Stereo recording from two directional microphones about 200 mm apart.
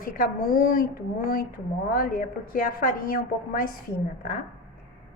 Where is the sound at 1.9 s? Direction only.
45° left (ahead or behind).